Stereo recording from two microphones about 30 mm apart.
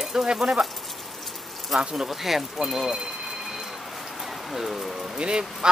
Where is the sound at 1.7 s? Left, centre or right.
Centre.